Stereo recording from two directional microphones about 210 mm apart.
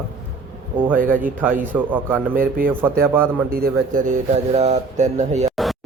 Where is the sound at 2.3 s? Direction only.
40° right (ahead or behind).